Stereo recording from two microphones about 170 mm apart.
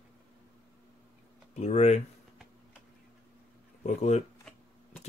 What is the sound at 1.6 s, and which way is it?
Speech, 40° left (ahead or behind).